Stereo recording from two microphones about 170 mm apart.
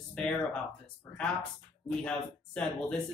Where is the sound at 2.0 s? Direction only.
5° left (ahead or behind).